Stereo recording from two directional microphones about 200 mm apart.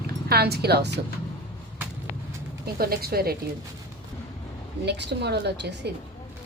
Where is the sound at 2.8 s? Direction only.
50° right (ahead or behind).